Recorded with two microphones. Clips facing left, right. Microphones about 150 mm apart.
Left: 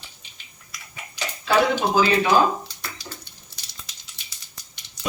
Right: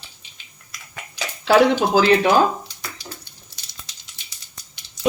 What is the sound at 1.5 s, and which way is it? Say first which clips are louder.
Speech: right 5 dB; 80° right.